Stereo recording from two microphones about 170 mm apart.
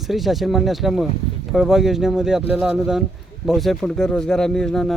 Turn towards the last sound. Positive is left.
turn(degrees=5)  # may be behind; listen again after turning